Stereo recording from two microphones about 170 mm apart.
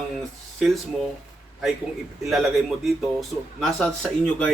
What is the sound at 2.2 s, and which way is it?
A man's voice, centre (ahead or behind).